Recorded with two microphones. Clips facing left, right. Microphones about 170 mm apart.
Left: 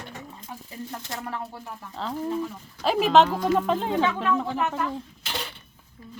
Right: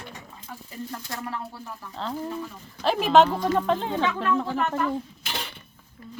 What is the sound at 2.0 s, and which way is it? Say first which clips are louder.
Speech: left 3 dB; 5° left (ahead or behind).